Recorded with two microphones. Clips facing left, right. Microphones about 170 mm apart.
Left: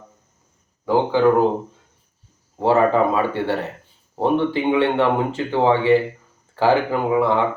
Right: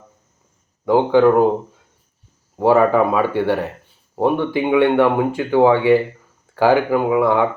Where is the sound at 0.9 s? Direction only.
15° right (ahead or behind).